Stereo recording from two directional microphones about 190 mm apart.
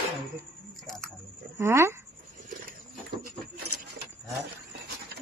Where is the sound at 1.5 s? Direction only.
15° right (ahead or behind).